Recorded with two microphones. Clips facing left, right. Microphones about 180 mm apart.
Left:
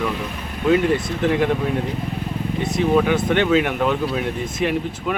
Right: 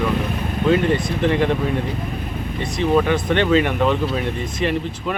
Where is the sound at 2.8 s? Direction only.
5° left (ahead or behind).